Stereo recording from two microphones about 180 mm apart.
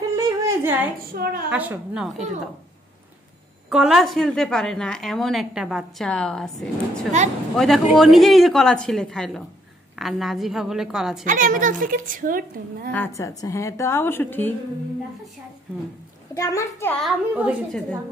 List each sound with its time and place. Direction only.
0.1 s a sound: 15° right (ahead or behind)
0.9 s a woman's voice: 55° right (ahead or behind)
1.5 s a woman's voice: 5° right (ahead or behind)
3.7 s a woman's voice: 5° right (ahead or behind)
11.2 s a woman's voice: 45° right (ahead or behind)
12.9 s a woman's voice: 15° left (ahead or behind)
16.3 s a woman's voice: 15° left (ahead or behind)
17.0 s a woman's voice: 5° right (ahead or behind)